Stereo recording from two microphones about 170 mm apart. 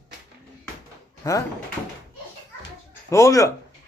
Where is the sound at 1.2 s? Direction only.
20° left (ahead or behind).